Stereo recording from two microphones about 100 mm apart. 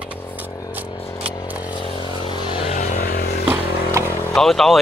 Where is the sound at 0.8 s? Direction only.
65° left (ahead or behind).